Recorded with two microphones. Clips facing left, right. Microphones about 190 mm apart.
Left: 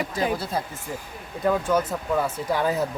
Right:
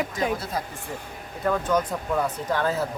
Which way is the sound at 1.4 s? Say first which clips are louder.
Left 1 dB; 10° left (ahead or behind).